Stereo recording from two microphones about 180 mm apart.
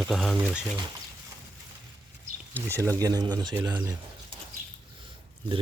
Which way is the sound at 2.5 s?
15° right (ahead or behind).